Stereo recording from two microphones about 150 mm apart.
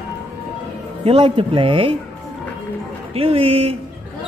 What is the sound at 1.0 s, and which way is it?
Speech, 40° right (ahead or behind).